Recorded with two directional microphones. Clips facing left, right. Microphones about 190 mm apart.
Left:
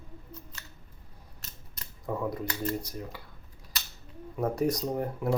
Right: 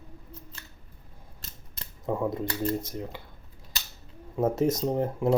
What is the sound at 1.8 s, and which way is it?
Speech, 25° right (ahead or behind).